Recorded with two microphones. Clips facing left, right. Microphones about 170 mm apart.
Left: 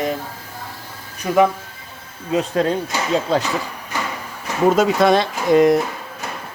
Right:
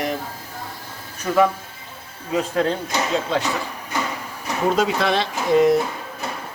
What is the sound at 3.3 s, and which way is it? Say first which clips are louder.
Speech: left 6 dB; 35° left (ahead or behind).